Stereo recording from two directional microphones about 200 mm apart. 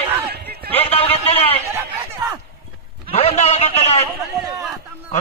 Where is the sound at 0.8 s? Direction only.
30° left (ahead or behind).